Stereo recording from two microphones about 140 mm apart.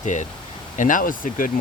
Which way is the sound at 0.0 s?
60° left (ahead or behind).